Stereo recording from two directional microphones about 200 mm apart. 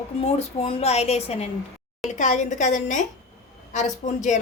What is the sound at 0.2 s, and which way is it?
A woman's voice, 30° left (ahead or behind).